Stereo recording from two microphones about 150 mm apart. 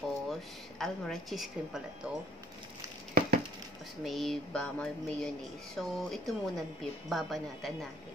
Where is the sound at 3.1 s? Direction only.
75° right (ahead or behind).